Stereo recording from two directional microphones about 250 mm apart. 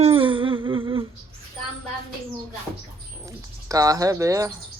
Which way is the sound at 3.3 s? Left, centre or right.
Centre.